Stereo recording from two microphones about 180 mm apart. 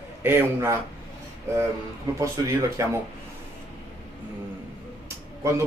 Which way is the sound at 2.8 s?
15° right (ahead or behind).